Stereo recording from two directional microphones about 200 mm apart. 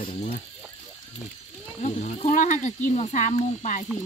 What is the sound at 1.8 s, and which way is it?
Speech, 35° left (ahead or behind).